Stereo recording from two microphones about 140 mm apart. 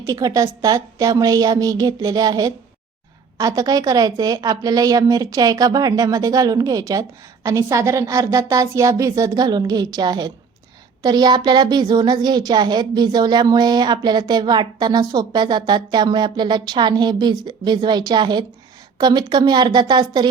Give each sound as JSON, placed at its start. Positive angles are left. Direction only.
{"t": 0.0, "sound": "a woman's voice", "side_deg": -25}